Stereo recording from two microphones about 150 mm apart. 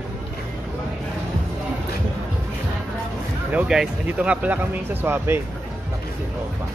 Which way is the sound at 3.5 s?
5° right (ahead or behind).